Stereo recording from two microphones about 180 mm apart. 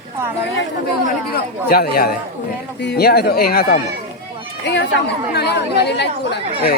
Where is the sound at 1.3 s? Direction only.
60° left (ahead or behind).